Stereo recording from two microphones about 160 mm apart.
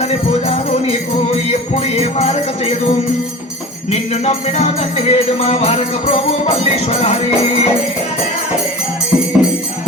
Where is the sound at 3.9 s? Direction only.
40° left (ahead or behind).